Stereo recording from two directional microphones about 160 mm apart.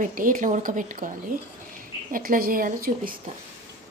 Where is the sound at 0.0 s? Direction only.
55° right (ahead or behind).